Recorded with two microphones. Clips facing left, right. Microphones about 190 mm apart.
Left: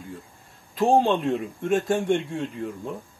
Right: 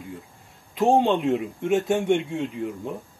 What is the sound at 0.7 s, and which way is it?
Speech, 15° right (ahead or behind).